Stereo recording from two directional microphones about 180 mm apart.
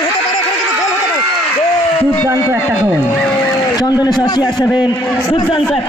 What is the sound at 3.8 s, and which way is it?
A man's voice, 20° left (ahead or behind).